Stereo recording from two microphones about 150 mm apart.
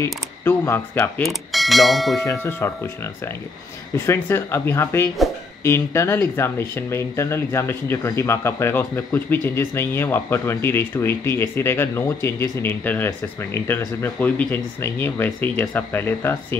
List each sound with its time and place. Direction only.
0.0 s speech: 15° left (ahead or behind)
1.2 s speech: centre (ahead or behind)
2.1 s speech: 20° left (ahead or behind)
3.9 s speech: 20° left (ahead or behind)